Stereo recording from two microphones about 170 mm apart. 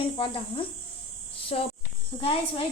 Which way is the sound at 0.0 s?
30° left (ahead or behind).